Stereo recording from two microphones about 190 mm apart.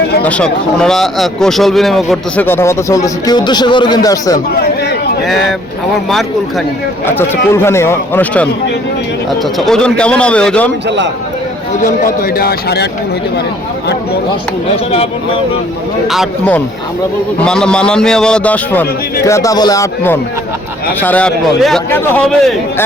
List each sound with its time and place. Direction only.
0.2 s speech: 5° left (ahead or behind)
5.2 s speech: centre (ahead or behind)
7.2 s a man's voice: 15° left (ahead or behind)
10.8 s a man's voice: 65° right (ahead or behind)
11.8 s speech: 50° left (ahead or behind)
17.4 s a man's voice: 5° left (ahead or behind)